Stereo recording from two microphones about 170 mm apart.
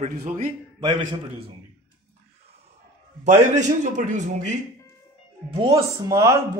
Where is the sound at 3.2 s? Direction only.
45° right (ahead or behind).